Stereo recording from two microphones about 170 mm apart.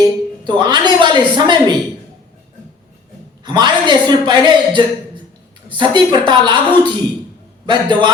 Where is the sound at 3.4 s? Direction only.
25° right (ahead or behind).